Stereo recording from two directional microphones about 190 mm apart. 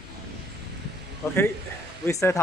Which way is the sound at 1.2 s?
10° left (ahead or behind).